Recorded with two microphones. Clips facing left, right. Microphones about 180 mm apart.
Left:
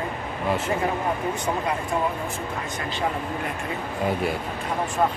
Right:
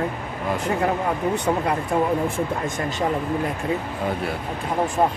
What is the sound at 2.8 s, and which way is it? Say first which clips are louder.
Speech: right 5 dB; 45° right (ahead or behind).